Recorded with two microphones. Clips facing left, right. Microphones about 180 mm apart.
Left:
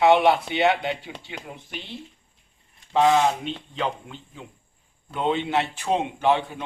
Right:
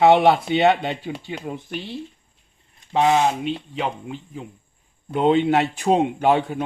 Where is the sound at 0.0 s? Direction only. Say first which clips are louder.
Right 3 dB; 50° right (ahead or behind).